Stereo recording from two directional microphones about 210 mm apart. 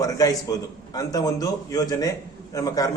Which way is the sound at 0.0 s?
15° left (ahead or behind).